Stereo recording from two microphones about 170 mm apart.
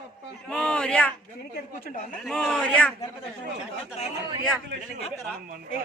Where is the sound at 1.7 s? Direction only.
55° left (ahead or behind).